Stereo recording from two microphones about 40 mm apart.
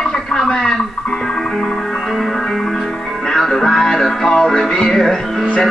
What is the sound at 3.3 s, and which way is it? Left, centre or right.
Music, centre.